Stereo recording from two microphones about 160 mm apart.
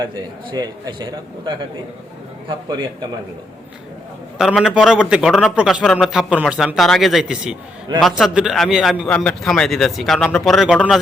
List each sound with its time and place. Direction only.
0.0 s a man's voice: 25° right (ahead or behind)
4.4 s a man's voice: centre (ahead or behind)